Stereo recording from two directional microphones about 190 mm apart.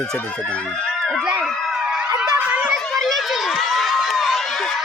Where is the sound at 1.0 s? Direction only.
Centre (ahead or behind).